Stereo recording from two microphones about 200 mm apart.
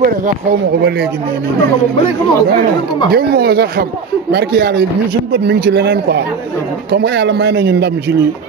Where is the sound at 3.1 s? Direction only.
50° right (ahead or behind).